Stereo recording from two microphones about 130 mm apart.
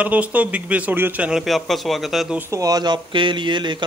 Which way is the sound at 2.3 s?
25° right (ahead or behind).